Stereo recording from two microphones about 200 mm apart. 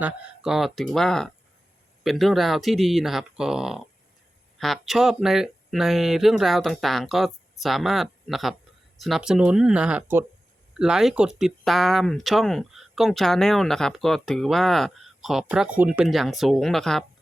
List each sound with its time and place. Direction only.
0.0 s speech: centre (ahead or behind)